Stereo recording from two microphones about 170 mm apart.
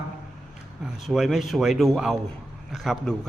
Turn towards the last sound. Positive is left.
turn(degrees=0)  # may be behind; listen again after turning